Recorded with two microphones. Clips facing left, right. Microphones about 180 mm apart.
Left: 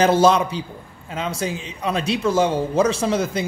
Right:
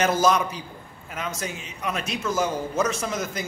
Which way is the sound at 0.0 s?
30° left (ahead or behind).